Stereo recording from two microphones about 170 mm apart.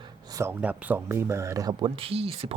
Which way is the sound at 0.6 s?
10° right (ahead or behind).